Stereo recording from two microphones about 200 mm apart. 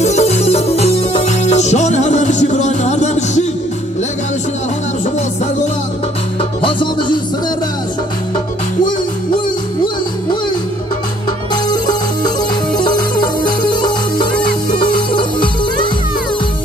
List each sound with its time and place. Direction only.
0.0 s music: 35° left (ahead or behind)
6.6 s music: 25° left (ahead or behind)
11.5 s music: 20° left (ahead or behind)
13.4 s music: 20° left (ahead or behind)